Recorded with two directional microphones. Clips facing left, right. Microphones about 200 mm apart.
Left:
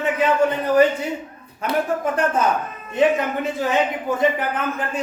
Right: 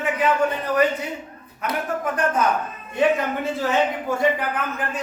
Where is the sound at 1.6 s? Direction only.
30° left (ahead or behind).